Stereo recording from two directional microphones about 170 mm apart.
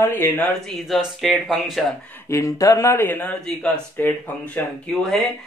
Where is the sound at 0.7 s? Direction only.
Centre (ahead or behind).